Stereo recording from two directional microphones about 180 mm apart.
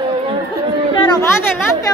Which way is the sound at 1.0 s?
20° left (ahead or behind).